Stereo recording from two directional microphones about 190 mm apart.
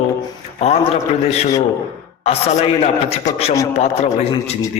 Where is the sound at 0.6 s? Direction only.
35° left (ahead or behind).